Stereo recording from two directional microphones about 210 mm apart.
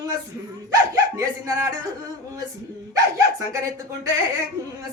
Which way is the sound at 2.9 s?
15° right (ahead or behind).